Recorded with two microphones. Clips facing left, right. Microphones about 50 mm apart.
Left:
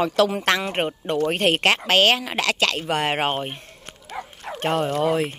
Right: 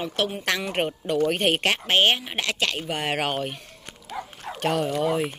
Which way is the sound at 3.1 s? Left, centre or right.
Left.